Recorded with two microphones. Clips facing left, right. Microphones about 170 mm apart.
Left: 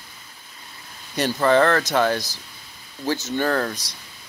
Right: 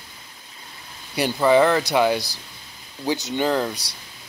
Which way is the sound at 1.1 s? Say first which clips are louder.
Right 1 dB; 10° right (ahead or behind).